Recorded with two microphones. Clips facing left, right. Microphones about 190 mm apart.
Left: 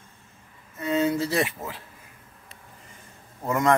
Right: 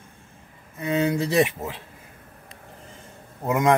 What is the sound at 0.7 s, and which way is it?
Speech, 15° right (ahead or behind).